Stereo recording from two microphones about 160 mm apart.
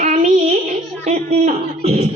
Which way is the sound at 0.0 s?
45° right (ahead or behind).